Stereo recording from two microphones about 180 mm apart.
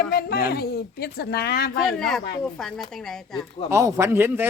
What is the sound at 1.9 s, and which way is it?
Speech, centre (ahead or behind).